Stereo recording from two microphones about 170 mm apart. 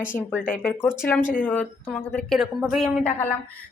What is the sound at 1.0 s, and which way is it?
Speech, 10° left (ahead or behind).